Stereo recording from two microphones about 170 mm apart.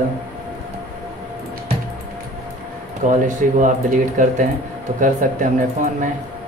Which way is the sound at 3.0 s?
50° right (ahead or behind).